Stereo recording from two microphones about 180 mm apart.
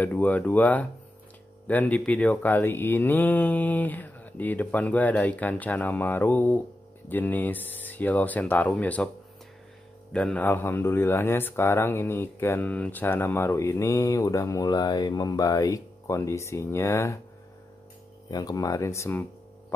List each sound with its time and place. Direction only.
0.0 s speech: 10° left (ahead or behind)
10.1 s speech: 5° left (ahead or behind)
18.3 s speech: 20° left (ahead or behind)